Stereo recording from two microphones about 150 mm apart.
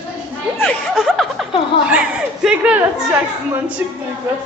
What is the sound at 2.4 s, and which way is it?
Speech, 10° right (ahead or behind).